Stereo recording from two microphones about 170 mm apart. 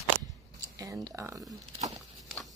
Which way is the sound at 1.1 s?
20° right (ahead or behind).